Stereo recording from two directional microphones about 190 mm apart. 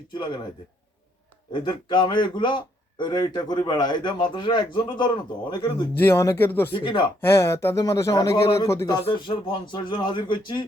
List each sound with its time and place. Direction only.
0.1 s a man's voice: 25° left (ahead or behind)
1.5 s a man's voice: 25° left (ahead or behind)
6.0 s speech: 10° left (ahead or behind)
6.7 s a man's voice: 25° left (ahead or behind)
7.2 s speech: 15° left (ahead or behind)
9.0 s a man's voice: 25° left (ahead or behind)